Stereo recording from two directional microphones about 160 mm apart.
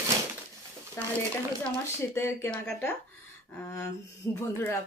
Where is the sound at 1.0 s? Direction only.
15° left (ahead or behind).